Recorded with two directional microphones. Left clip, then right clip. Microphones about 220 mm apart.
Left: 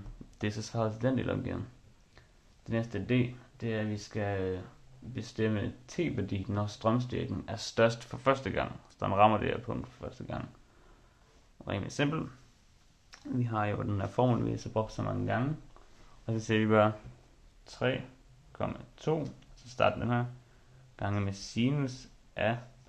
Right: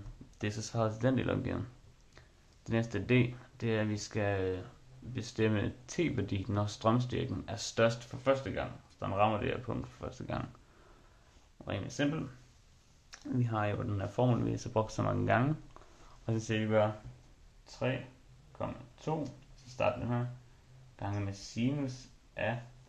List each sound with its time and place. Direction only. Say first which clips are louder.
0.4 s speech: left 1 dB; 10° left (ahead or behind)
9.7 s speech: left 1 dB; centre (ahead or behind)
11.5 s speech: left 3 dB; 15° left (ahead or behind)
13.1 s speech: left 1 dB; centre (ahead or behind)
16.5 s speech: left 4 dB; 30° left (ahead or behind)
17.6 s speech: left 4 dB; 40° left (ahead or behind)